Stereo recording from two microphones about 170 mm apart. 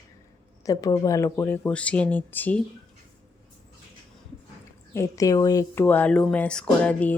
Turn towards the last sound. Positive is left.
turn(degrees=10)  # may be behind; listen again after turning